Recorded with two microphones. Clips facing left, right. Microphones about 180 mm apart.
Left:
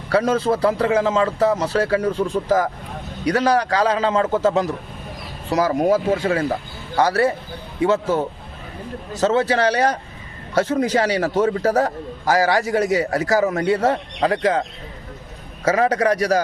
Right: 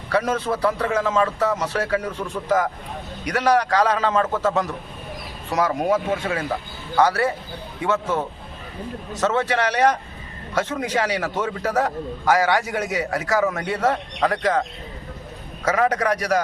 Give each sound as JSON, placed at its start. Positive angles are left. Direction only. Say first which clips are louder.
{"t": 0.1, "sound": "a man's voice", "louder": "left 4 dB", "side_deg": 30}
{"t": 9.2, "sound": "a man's voice", "louder": "left 4 dB", "side_deg": 30}
{"t": 15.6, "sound": "a man's voice", "louder": "left 3 dB", "side_deg": 30}